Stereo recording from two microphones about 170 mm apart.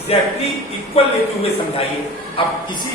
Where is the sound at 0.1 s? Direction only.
35° left (ahead or behind).